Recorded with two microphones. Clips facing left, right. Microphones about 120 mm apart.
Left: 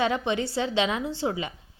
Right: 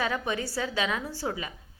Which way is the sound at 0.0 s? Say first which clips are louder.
Left 4 dB; 25° left (ahead or behind).